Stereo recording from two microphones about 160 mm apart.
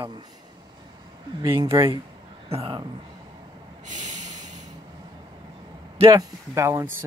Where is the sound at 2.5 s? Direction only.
35° right (ahead or behind).